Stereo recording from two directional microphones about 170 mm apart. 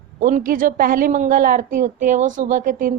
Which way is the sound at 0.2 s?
50° right (ahead or behind).